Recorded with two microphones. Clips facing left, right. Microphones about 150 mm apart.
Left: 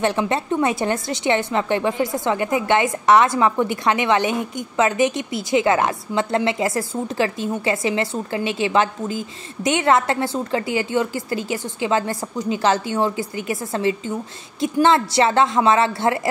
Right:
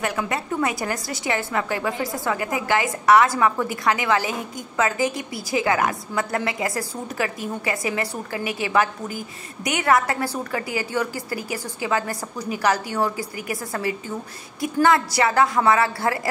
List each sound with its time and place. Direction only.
0.0 s a woman's voice: 25° left (ahead or behind)